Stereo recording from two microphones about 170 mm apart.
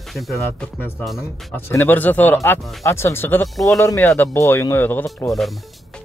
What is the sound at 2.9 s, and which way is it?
Speech, 15° left (ahead or behind).